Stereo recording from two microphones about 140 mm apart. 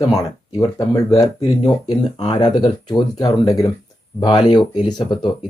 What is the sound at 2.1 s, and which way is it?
Speech, 40° left (ahead or behind).